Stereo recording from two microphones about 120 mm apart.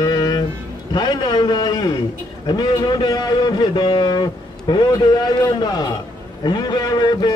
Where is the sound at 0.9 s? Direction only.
35° left (ahead or behind).